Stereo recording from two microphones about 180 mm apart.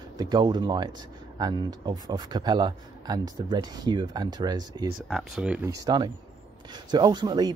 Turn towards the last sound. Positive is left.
turn(degrees=-20)  # may be behind; listen again after turning